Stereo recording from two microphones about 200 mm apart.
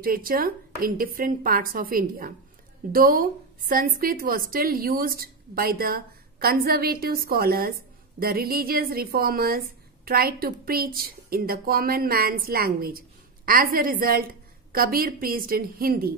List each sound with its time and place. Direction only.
0.0 s a woman's voice: 45° right (ahead or behind)